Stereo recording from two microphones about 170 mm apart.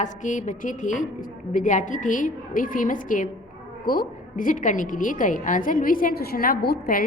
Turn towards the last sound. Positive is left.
turn(degrees=60)  # may be behind; listen again after turning